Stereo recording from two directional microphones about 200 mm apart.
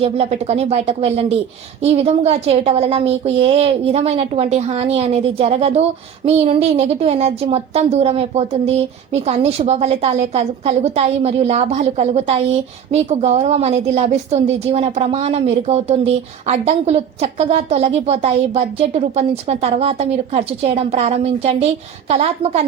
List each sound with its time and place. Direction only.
0.0 s a woman's voice: 30° right (ahead or behind)